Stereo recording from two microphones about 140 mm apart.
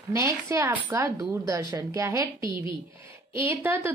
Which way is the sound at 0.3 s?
20° right (ahead or behind).